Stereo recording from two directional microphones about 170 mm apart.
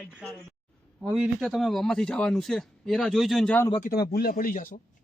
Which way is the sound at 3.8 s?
55° left (ahead or behind).